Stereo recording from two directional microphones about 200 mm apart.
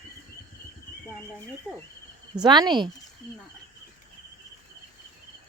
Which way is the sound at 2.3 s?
20° right (ahead or behind).